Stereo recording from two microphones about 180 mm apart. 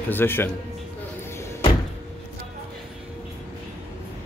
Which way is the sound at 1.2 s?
15° left (ahead or behind).